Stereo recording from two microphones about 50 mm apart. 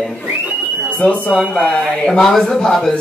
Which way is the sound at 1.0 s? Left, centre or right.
Left.